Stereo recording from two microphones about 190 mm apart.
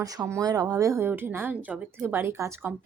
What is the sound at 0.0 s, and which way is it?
Speech, 20° right (ahead or behind).